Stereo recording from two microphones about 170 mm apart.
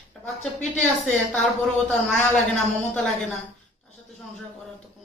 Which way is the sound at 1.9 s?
5° left (ahead or behind).